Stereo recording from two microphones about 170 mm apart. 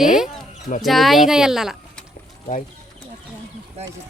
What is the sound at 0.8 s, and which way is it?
Speech, centre (ahead or behind).